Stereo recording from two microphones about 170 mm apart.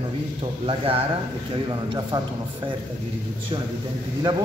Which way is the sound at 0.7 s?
35° right (ahead or behind).